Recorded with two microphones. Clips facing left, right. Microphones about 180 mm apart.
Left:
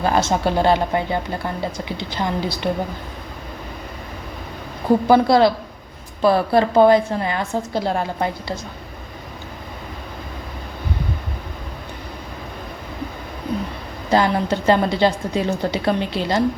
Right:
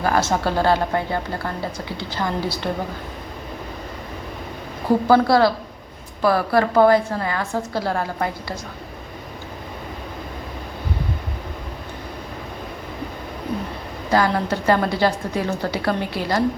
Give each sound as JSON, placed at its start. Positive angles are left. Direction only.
{"t": 0.0, "sound": "a woman's voice", "side_deg": 20}
{"t": 5.0, "sound": "a woman's voice", "side_deg": 20}
{"t": 14.1, "sound": "a woman's voice", "side_deg": 20}